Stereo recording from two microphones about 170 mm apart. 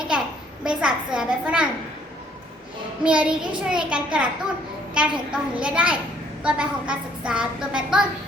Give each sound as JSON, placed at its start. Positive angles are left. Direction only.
{"t": 0.6, "sound": "a child's voice", "side_deg": -5}
{"t": 3.0, "sound": "a child's voice", "side_deg": -5}